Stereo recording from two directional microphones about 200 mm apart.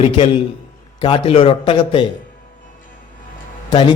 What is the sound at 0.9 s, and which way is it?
A man's voice, 25° left (ahead or behind).